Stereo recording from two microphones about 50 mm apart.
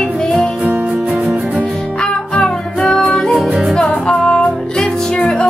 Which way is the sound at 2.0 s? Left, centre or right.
Centre.